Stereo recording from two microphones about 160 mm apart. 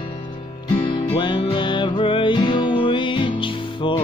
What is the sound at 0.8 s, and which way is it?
Music, 30° left (ahead or behind).